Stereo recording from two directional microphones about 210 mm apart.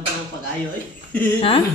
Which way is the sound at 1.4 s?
25° left (ahead or behind).